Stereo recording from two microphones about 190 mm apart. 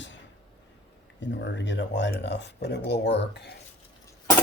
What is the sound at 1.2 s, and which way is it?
Speech, 70° left (ahead or behind).